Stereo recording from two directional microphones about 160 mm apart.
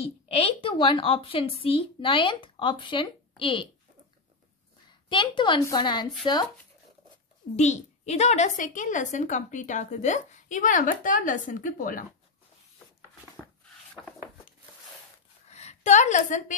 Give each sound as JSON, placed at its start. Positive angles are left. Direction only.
{"t": 0.0, "sound": "a woman's voice", "side_deg": 40}
{"t": 5.1, "sound": "a woman's voice", "side_deg": 30}
{"t": 7.5, "sound": "a woman's voice", "side_deg": 45}
{"t": 15.5, "sound": "a woman's voice", "side_deg": 45}